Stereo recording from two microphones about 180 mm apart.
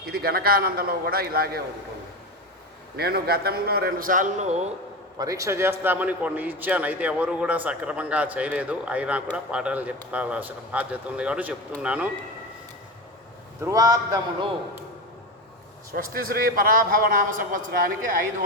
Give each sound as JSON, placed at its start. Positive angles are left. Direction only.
{"t": 0.0, "sound": "a man's voice", "side_deg": -60}
{"t": 2.9, "sound": "a man's voice", "side_deg": -60}
{"t": 5.1, "sound": "a man's voice", "side_deg": -20}
{"t": 13.6, "sound": "a man's voice", "side_deg": -20}
{"t": 15.9, "sound": "a man's voice", "side_deg": -55}